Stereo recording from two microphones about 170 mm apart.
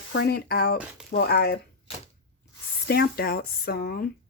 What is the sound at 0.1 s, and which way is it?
Speech, 70° left (ahead or behind).